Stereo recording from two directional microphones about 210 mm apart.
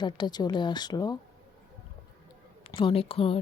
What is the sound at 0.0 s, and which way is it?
Speech, 20° left (ahead or behind).